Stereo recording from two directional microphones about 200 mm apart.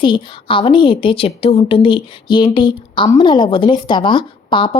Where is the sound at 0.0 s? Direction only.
25° left (ahead or behind).